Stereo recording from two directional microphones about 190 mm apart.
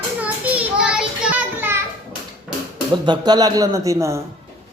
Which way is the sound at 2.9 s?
25° right (ahead or behind).